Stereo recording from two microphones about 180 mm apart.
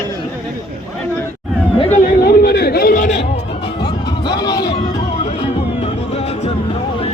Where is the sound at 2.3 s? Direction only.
60° left (ahead or behind).